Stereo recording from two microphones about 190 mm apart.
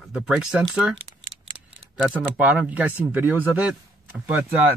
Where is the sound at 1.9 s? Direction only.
5° right (ahead or behind).